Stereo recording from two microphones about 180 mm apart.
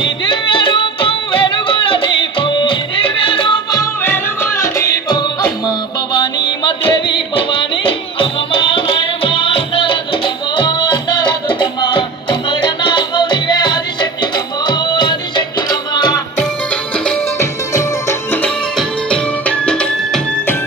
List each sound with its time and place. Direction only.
0.0 s music: 25° left (ahead or behind)
4.0 s music: 10° left (ahead or behind)
17.4 s music: 15° left (ahead or behind)